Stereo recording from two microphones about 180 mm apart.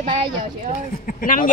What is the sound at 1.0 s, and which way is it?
Speech, 50° left (ahead or behind).